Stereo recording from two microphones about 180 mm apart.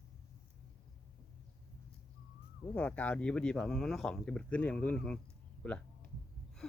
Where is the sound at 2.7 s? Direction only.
10° left (ahead or behind).